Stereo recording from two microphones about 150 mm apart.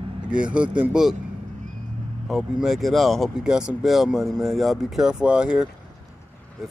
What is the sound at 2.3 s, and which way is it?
Speech, centre (ahead or behind).